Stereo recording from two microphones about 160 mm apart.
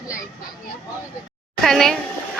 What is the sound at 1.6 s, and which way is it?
Speech, centre (ahead or behind).